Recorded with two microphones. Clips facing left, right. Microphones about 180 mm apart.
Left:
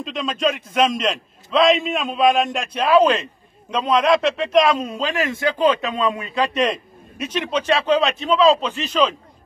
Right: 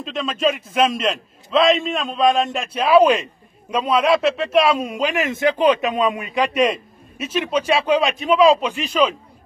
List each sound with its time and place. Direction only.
0.0 s a man's voice: centre (ahead or behind)